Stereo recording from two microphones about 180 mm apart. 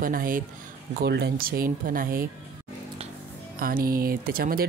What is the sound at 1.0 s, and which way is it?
Speech, 65° right (ahead or behind).